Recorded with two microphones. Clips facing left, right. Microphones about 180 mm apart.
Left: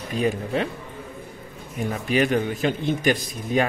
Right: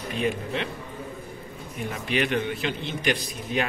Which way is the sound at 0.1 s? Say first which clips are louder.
Left 4 dB; 40° left (ahead or behind).